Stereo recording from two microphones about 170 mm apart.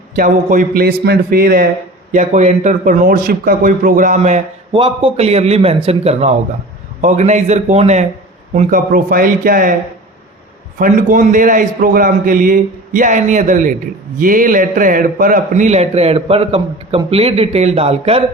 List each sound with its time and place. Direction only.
0.2 s a man's voice: 50° right (ahead or behind)
2.1 s a man's voice: 45° right (ahead or behind)
4.8 s a man's voice: 30° right (ahead or behind)
8.5 s a man's voice: 55° right (ahead or behind)
10.8 s a man's voice: 55° right (ahead or behind); by 18.2 s 35° right (ahead or behind)